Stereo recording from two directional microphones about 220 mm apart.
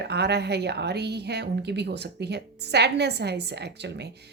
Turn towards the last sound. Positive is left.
turn(degrees=-50)  # may be behind; listen again after turning